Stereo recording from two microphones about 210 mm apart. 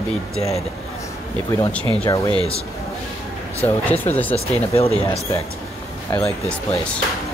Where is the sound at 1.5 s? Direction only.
15° left (ahead or behind).